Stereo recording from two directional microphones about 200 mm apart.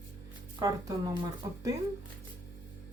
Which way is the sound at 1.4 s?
15° right (ahead or behind).